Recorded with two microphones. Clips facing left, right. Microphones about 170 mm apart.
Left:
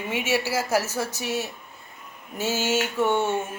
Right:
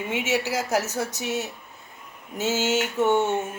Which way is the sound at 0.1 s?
20° right (ahead or behind).